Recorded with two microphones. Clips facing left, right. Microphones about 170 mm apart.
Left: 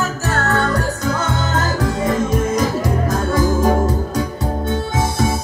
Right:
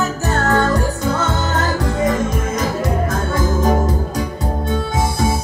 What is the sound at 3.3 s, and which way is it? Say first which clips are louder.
Music: left 2 dB; 10° left (ahead or behind).